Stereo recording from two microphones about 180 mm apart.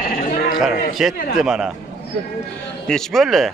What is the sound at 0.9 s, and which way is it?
Speech, centre (ahead or behind).